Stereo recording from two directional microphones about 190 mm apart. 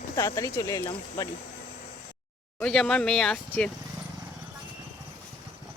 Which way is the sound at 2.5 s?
5° left (ahead or behind).